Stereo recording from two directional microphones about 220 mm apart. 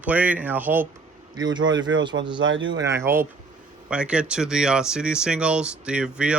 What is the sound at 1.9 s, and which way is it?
Speech, 60° right (ahead or behind).